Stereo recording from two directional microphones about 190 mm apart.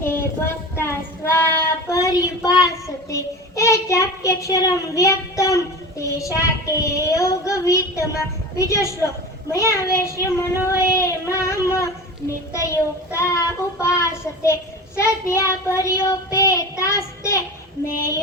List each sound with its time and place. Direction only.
0.0 s child singing: 10° left (ahead or behind)